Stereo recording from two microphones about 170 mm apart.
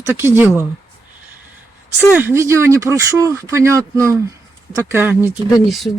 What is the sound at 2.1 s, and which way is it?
Speech, 15° right (ahead or behind).